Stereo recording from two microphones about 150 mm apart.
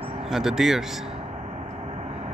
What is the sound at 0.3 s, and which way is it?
Speech, centre (ahead or behind).